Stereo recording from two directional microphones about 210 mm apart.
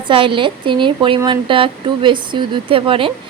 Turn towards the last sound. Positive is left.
turn(degrees=-25)  # may be behind; listen again after turning